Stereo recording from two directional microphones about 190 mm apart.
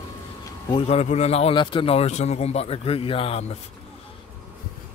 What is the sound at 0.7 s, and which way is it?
A man's voice, 35° left (ahead or behind).